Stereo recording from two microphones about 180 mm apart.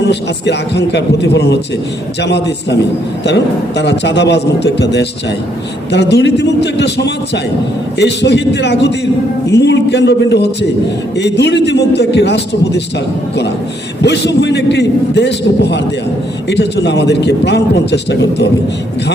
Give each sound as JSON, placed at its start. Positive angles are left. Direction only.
{"t": 0.0, "sound": "a man's voice", "side_deg": 70}
{"t": 3.8, "sound": "a man's voice", "side_deg": 75}
{"t": 14.0, "sound": "a man's voice", "side_deg": 70}